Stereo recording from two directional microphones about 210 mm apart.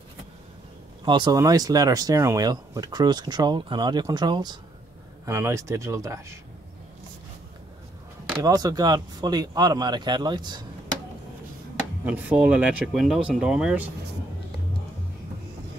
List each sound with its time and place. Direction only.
1.0 s speech: 20° right (ahead or behind)
8.4 s speech: 20° right (ahead or behind)
12.0 s speech: 5° right (ahead or behind)